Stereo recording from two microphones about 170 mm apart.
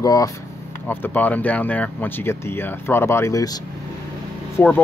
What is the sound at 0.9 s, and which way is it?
Speech, 10° left (ahead or behind).